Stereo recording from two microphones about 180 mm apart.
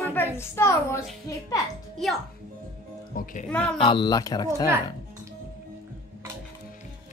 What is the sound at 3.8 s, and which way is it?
Speech, 25° left (ahead or behind).